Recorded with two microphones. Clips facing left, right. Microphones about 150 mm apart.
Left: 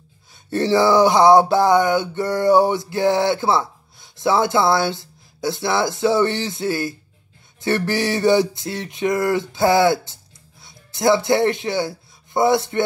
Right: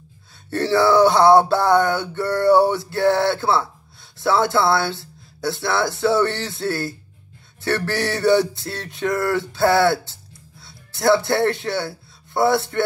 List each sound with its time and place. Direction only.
0.5 s male singing: 20° left (ahead or behind)
10.6 s speech: 20° left (ahead or behind)
12.4 s male singing: 20° left (ahead or behind)